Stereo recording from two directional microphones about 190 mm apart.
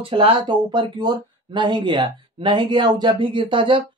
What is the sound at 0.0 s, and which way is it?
Speech, 30° right (ahead or behind).